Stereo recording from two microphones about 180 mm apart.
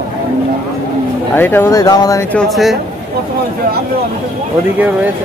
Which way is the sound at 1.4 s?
10° left (ahead or behind).